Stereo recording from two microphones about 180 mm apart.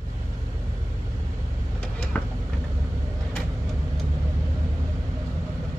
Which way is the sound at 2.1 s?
10° left (ahead or behind).